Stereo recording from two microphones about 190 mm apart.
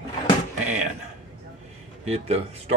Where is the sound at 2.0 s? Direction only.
35° right (ahead or behind).